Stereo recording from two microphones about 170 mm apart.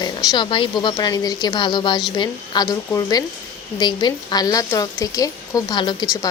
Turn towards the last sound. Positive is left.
turn(degrees=25)  # may be behind; listen again after turning